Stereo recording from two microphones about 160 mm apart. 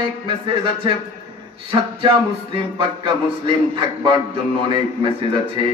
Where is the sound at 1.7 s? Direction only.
35° right (ahead or behind).